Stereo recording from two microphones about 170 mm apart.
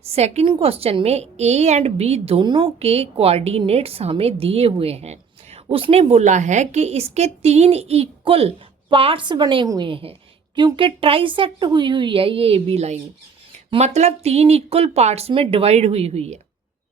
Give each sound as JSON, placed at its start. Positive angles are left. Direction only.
{"t": 0.1, "sound": "a woman's voice", "side_deg": -40}